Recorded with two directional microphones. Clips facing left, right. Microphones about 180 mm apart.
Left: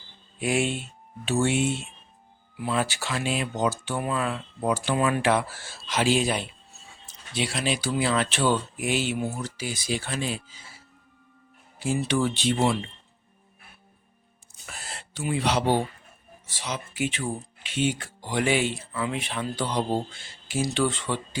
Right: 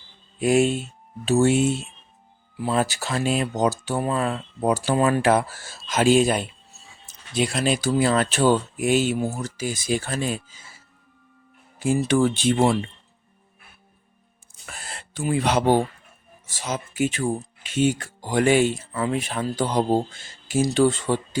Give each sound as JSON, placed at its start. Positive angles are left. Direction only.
{"t": 0.3, "sound": "speech", "side_deg": -40}
{"t": 11.8, "sound": "speech", "side_deg": -50}
{"t": 14.7, "sound": "a sound", "side_deg": -50}
{"t": 16.5, "sound": "speech", "side_deg": -45}